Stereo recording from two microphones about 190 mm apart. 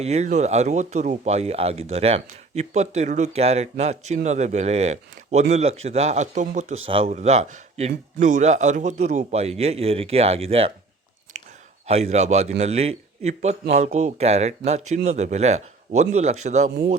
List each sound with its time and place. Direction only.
0.0 s speech: 35° right (ahead or behind)
11.3 s chewing: 40° right (ahead or behind)
11.9 s speech: 35° right (ahead or behind)